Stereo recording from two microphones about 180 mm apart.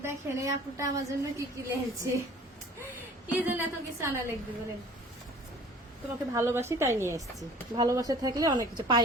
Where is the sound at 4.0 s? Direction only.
15° right (ahead or behind).